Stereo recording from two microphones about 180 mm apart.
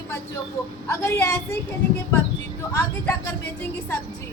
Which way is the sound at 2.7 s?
15° left (ahead or behind).